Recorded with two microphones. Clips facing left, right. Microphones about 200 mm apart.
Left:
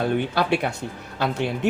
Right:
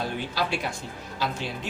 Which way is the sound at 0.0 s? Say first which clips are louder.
Left 7 dB; 60° left (ahead or behind).